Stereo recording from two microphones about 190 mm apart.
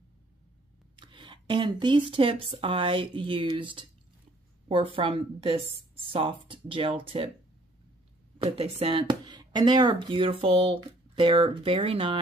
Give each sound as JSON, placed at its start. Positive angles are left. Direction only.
{"t": 0.9, "sound": "speech", "side_deg": -25}
{"t": 8.4, "sound": "speech", "side_deg": -30}